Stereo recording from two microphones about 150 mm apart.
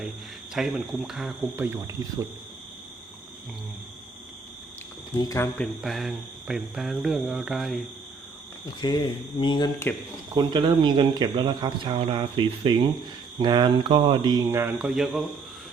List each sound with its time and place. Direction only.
0.5 s speech: centre (ahead or behind)
1.5 s speech: 15° right (ahead or behind)
5.1 s speech: 25° left (ahead or behind)
5.5 s speech: centre (ahead or behind)
8.8 s speech: 30° left (ahead or behind)
9.9 s speech: 15° left (ahead or behind)
10.3 s speech: 30° right (ahead or behind)
14.8 s speech: 5° right (ahead or behind)